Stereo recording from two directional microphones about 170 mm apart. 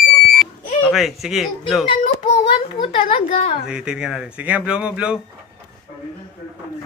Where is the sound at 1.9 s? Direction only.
35° left (ahead or behind).